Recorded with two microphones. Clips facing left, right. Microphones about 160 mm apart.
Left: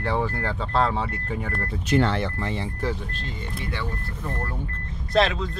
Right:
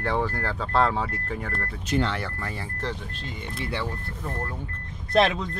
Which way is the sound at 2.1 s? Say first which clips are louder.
Left 5 dB; 20° left (ahead or behind).